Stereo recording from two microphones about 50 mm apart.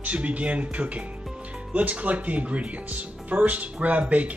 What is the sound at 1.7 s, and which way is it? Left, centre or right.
Speech, right.